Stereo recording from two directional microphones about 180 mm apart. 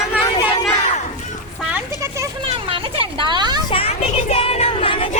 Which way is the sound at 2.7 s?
30° right (ahead or behind).